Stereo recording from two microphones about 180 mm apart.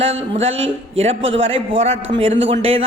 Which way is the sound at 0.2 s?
35° right (ahead or behind).